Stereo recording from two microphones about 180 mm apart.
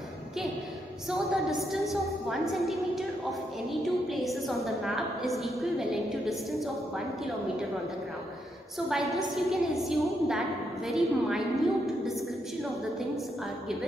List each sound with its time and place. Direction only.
1.1 s a woman's voice: centre (ahead or behind)
4.1 s a woman's voice: centre (ahead or behind)
8.7 s a woman's voice: centre (ahead or behind)